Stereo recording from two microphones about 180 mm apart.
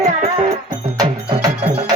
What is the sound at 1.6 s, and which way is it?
Music, 35° right (ahead or behind).